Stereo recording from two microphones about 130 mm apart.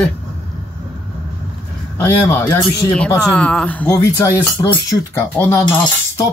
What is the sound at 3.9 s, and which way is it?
Speech, 25° left (ahead or behind).